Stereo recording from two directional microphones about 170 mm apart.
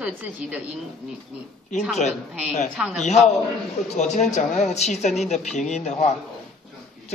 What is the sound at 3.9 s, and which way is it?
A man's voice, 40° left (ahead or behind).